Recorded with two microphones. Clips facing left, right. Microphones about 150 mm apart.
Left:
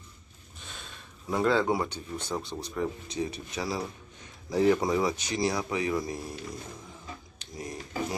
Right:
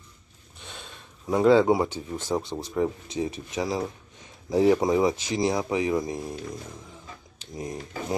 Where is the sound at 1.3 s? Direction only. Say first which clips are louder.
Right 7 dB; 20° right (ahead or behind).